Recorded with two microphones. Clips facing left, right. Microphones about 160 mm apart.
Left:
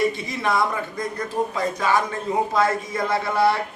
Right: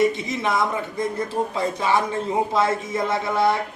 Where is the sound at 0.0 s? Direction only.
20° right (ahead or behind).